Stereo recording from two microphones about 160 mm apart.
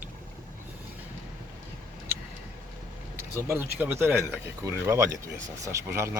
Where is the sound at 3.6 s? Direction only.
15° right (ahead or behind).